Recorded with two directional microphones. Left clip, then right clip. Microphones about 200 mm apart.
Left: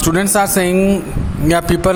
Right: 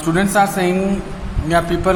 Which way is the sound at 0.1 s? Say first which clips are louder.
Even; 50° left (ahead or behind).